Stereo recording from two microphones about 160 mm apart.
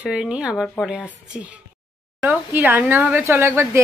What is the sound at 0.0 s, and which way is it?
A woman's voice, 5° right (ahead or behind).